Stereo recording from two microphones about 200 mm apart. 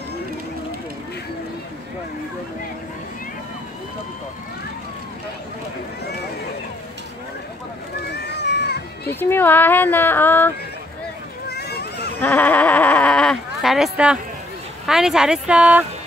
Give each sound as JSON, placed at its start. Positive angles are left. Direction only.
{"t": 8.0, "sound": "run", "side_deg": 55}
{"t": 9.1, "sound": "speech", "side_deg": 10}
{"t": 11.4, "sound": "a sound", "side_deg": 55}
{"t": 12.2, "sound": "sheep", "side_deg": 10}
{"t": 14.9, "sound": "a woman's voice", "side_deg": -5}